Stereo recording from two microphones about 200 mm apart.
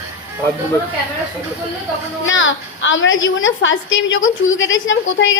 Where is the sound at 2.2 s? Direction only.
75° left (ahead or behind).